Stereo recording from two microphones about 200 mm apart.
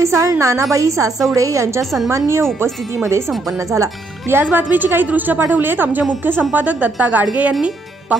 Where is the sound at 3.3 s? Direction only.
Centre (ahead or behind).